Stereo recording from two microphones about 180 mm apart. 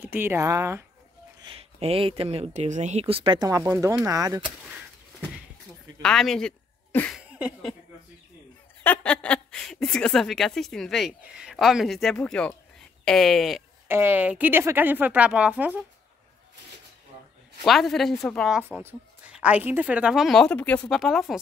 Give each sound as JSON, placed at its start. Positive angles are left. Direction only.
{"t": 0.1, "sound": "speech", "side_deg": -15}
{"t": 1.4, "sound": "speech", "side_deg": -30}
{"t": 6.0, "sound": "a sound", "side_deg": 5}
{"t": 7.2, "sound": "a sound", "side_deg": -5}
{"t": 8.8, "sound": "a woman's voice", "side_deg": 5}
{"t": 13.8, "sound": "speech", "side_deg": -10}
{"t": 17.6, "sound": "a woman's voice", "side_deg": 0}
{"t": 18.8, "sound": "a woman's voice", "side_deg": -10}